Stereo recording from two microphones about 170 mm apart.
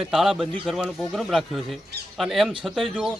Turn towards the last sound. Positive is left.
turn(degrees=0)  # may be behind; listen again after turning